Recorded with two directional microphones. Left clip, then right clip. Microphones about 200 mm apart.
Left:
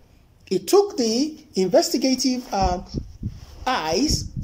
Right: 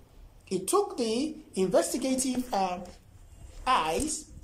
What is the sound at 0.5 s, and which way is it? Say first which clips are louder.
A woman's voice: left 9 dB; 25° left (ahead or behind).